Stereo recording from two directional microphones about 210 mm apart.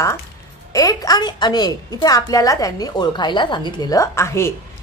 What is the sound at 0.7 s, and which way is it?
A woman's voice, 15° left (ahead or behind).